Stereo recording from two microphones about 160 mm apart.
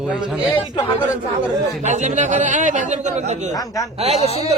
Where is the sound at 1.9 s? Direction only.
45° right (ahead or behind).